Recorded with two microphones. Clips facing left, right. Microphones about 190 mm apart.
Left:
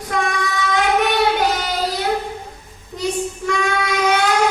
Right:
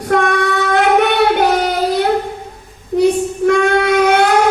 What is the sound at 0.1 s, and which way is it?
Child singing, 60° right (ahead or behind).